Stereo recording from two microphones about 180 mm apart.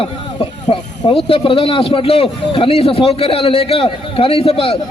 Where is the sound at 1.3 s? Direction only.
30° left (ahead or behind).